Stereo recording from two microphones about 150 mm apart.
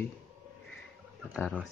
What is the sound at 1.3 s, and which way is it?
Speech, 10° left (ahead or behind).